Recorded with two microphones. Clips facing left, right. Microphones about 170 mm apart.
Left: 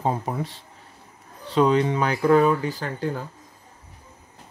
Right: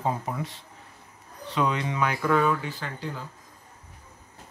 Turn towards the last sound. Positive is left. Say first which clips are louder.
# left 7 dB
turn(degrees=45)  # may be behind; listen again after turning